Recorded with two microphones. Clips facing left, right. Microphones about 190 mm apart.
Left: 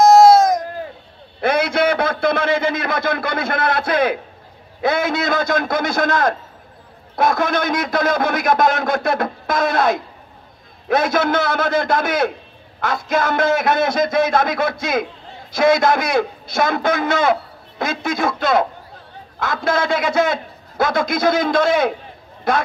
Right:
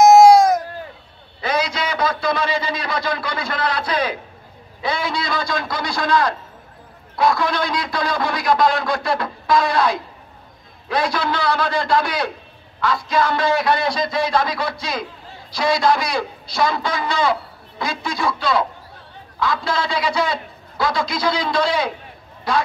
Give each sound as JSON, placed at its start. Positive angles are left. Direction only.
{"t": 0.0, "sound": "baby cry", "side_deg": -15}
{"t": 1.4, "sound": "a man's voice", "side_deg": 55}